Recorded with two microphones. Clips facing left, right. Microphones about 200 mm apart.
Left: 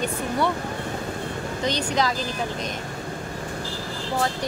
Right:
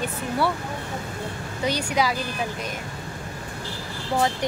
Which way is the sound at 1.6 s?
10° right (ahead or behind).